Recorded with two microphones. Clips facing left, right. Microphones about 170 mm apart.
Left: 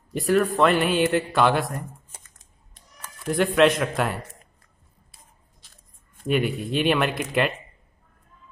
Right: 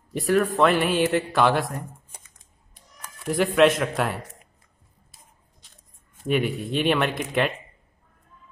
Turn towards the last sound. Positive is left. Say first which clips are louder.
# even
turn(degrees=0)  # may be behind; listen again after turning